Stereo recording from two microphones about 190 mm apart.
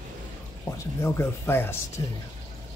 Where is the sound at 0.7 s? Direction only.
15° left (ahead or behind).